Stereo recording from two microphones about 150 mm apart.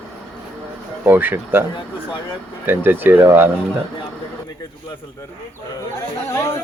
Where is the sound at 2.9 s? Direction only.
15° right (ahead or behind).